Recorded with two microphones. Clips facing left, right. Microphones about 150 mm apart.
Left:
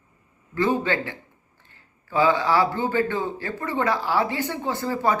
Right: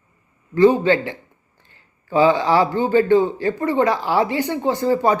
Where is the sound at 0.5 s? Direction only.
20° right (ahead or behind).